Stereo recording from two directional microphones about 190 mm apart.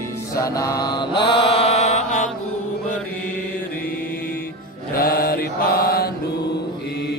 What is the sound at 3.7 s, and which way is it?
Mantra, 50° left (ahead or behind).